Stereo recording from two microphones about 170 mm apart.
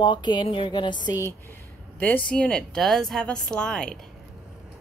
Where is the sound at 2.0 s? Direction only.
10° left (ahead or behind).